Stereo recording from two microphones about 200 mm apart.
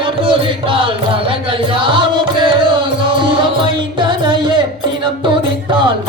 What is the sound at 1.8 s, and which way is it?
Music, 25° right (ahead or behind).